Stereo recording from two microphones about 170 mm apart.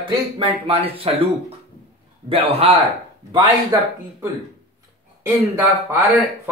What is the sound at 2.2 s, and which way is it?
Speech, 35° right (ahead or behind).